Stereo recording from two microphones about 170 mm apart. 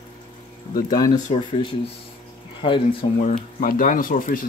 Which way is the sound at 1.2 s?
35° left (ahead or behind).